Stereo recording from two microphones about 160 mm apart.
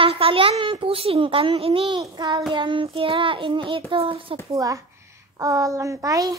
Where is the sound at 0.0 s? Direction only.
35° right (ahead or behind).